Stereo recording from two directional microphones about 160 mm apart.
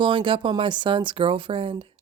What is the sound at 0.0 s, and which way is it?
A woman's voice, 30° right (ahead or behind).